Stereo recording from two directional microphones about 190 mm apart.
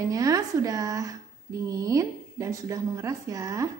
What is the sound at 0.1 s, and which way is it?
Speech, 20° right (ahead or behind).